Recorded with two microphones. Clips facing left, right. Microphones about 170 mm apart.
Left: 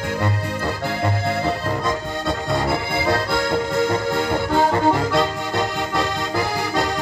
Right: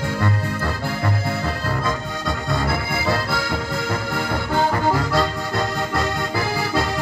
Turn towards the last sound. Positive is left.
turn(degrees=25)  # may be behind; listen again after turning